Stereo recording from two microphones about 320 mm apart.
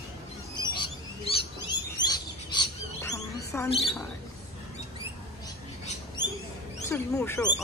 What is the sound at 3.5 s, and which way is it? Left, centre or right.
Rodents, centre.